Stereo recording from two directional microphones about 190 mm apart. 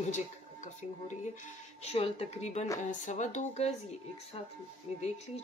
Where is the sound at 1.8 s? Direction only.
30° left (ahead or behind).